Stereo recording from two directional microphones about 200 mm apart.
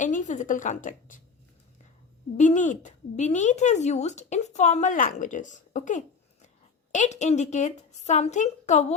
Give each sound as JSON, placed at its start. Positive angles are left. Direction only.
{"t": 0.0, "sound": "a woman's voice", "side_deg": 40}
{"t": 2.4, "sound": "speech", "side_deg": 35}